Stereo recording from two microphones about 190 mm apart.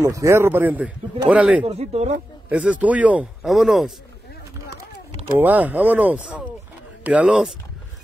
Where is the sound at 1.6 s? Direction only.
30° right (ahead or behind).